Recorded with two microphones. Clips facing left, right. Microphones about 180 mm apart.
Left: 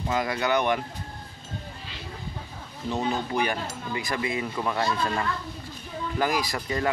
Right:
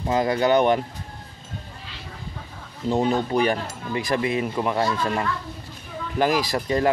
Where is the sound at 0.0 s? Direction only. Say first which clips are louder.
Right 6 dB; 30° right (ahead or behind).